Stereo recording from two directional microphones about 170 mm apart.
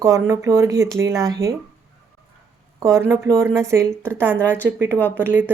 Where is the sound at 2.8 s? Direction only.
20° right (ahead or behind).